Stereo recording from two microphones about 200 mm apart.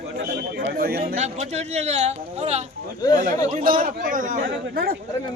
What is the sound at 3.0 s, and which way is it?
Speech, 20° left (ahead or behind).